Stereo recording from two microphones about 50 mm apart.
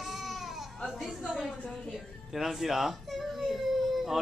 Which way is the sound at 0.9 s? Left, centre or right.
Centre.